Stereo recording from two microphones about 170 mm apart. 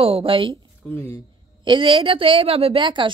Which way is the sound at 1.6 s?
30° right (ahead or behind).